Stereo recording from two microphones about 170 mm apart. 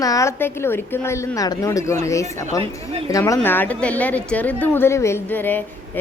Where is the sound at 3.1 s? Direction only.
20° left (ahead or behind).